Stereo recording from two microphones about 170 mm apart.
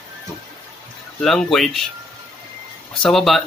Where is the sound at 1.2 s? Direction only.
Centre (ahead or behind).